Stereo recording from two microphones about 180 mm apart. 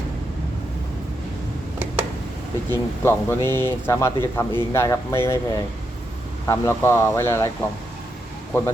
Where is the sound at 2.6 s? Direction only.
10° left (ahead or behind).